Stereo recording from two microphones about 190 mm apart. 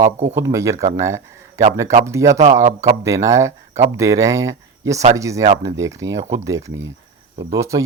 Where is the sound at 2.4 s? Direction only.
40° right (ahead or behind).